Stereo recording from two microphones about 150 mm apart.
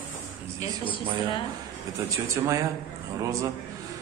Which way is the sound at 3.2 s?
20° right (ahead or behind).